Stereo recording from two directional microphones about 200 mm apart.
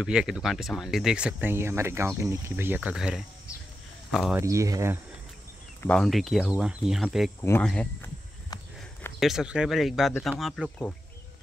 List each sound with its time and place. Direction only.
0.0 s speech: 5° right (ahead or behind)
4.4 s speech: 15° right (ahead or behind)
5.8 s speech: 5° left (ahead or behind)
9.2 s speech: centre (ahead or behind)